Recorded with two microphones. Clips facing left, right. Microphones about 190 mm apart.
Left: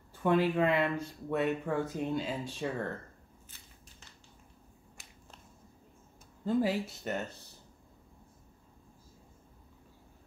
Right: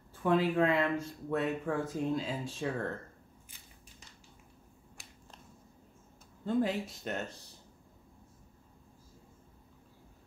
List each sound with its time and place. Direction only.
0.1 s speech: centre (ahead or behind)
5.0 s a sound: centre (ahead or behind)
6.4 s speech: 5° left (ahead or behind)